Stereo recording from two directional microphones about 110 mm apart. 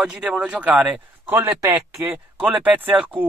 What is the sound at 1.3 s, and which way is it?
Speech, 25° right (ahead or behind).